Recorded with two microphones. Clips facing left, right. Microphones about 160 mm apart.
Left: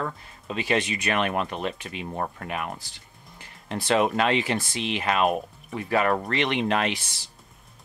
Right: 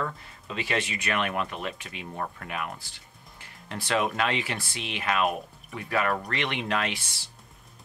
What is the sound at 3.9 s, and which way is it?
Speech, 25° left (ahead or behind).